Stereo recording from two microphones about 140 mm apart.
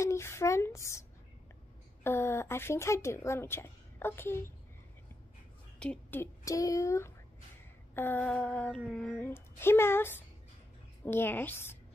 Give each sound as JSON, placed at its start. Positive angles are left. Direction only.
{"t": 0.0, "sound": "a sound", "side_deg": 20}
{"t": 2.0, "sound": "a woman's voice", "side_deg": 15}
{"t": 5.8, "sound": "a woman's voice", "side_deg": 10}